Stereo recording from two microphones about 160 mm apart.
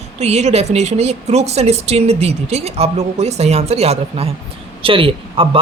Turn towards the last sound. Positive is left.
turn(degrees=-35)  # may be behind; listen again after turning